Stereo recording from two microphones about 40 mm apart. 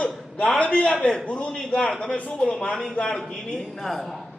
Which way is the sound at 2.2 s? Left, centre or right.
Left.